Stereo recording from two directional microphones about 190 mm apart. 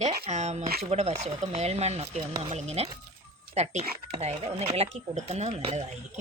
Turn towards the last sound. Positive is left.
turn(degrees=-35)  # may be behind; listen again after turning